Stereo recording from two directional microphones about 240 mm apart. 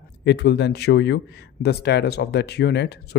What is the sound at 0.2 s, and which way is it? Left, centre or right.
Speech, left.